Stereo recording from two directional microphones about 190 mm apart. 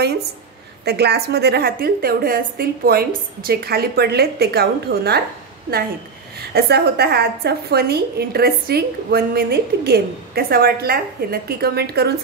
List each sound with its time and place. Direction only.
0.8 s a woman's voice: 60° right (ahead or behind)
6.5 s a woman's voice: 60° right (ahead or behind)